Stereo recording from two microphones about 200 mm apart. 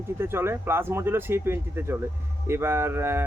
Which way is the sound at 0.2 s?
10° right (ahead or behind).